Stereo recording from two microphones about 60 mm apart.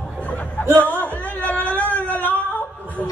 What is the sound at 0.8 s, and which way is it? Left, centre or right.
Music, left.